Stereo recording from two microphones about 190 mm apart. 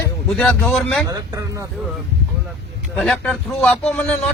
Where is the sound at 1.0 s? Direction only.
15° right (ahead or behind).